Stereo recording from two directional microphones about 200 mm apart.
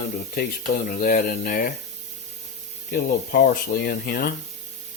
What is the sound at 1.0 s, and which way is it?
Speech, 45° left (ahead or behind).